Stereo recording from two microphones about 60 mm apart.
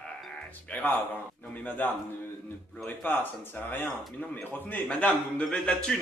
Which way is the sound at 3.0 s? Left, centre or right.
Left.